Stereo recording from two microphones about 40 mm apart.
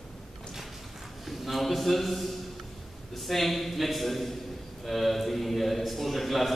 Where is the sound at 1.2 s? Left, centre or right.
Centre.